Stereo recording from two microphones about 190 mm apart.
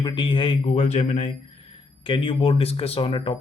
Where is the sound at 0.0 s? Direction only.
25° left (ahead or behind).